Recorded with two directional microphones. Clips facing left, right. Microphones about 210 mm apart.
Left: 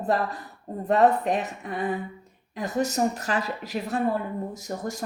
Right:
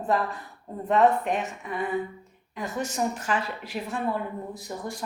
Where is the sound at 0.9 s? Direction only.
35° left (ahead or behind).